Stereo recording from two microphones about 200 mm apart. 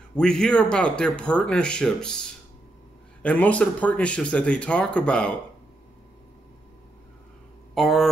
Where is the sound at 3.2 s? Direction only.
5° left (ahead or behind).